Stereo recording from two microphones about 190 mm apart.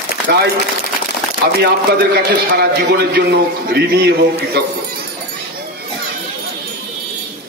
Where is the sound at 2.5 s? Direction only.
60° right (ahead or behind).